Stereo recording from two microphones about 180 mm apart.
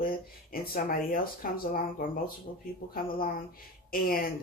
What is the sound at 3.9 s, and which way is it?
Speech, 55° left (ahead or behind).